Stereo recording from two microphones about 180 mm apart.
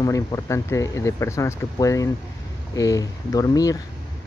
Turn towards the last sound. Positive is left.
turn(degrees=20)  # may be behind; listen again after turning